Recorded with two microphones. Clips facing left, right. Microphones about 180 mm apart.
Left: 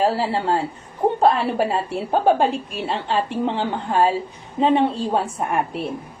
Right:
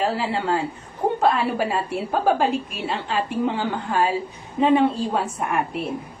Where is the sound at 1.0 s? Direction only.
30° left (ahead or behind).